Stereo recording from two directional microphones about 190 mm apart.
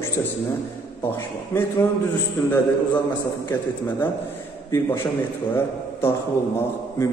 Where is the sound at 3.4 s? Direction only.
10° left (ahead or behind).